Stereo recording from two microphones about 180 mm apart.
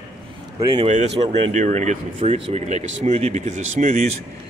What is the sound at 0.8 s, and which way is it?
Speech, 35° right (ahead or behind).